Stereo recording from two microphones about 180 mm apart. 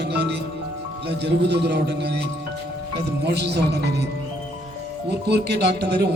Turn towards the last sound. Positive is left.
turn(degrees=-65)  # may be behind; listen again after turning